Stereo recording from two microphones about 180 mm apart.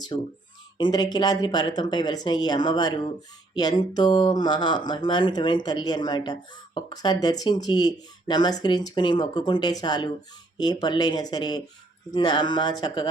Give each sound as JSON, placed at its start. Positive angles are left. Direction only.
{"t": 0.1, "sound": "speech", "side_deg": 25}